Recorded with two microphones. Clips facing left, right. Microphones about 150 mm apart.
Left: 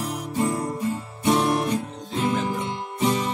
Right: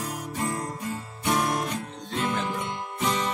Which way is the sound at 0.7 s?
30° left (ahead or behind).